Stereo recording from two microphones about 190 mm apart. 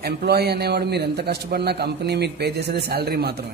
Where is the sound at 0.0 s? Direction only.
55° right (ahead or behind).